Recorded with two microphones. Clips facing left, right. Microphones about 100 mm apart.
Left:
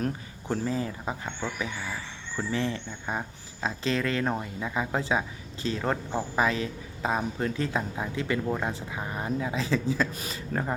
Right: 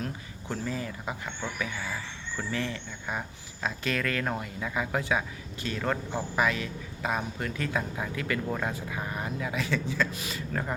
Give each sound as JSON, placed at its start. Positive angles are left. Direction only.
{"t": 0.0, "sound": "speech", "side_deg": 35}